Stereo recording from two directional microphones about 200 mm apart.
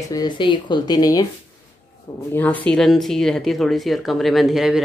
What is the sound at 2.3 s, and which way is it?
Speech, 10° left (ahead or behind).